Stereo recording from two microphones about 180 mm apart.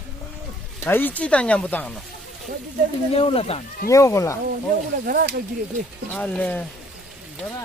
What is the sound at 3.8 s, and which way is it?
Speech, 15° left (ahead or behind).